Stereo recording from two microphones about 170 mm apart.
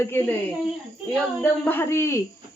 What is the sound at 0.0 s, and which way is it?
A woman's voice, 15° left (ahead or behind).